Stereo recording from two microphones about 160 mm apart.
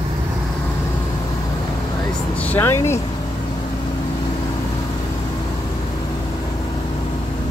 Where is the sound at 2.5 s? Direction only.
15° left (ahead or behind).